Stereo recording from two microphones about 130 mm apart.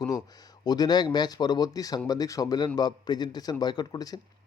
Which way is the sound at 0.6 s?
30° left (ahead or behind).